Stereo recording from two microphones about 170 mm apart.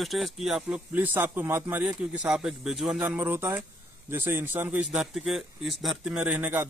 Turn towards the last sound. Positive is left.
turn(degrees=-10)  # may be behind; listen again after turning